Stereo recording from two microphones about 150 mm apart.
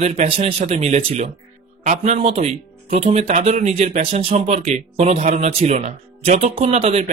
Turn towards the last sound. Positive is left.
turn(degrees=-45)  # may be behind; listen again after turning